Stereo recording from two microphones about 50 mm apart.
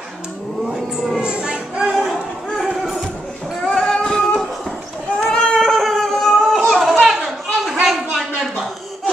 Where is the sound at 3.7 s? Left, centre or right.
Centre.